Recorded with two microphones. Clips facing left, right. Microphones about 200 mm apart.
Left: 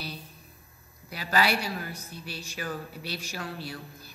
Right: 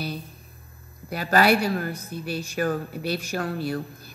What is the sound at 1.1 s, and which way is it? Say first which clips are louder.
A woman's voice: right 7 dB; 50° right (ahead or behind).